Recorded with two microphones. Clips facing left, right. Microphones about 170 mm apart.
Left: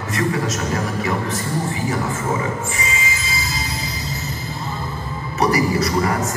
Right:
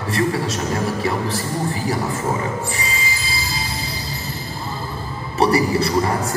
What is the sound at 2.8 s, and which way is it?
Music, 35° right (ahead or behind).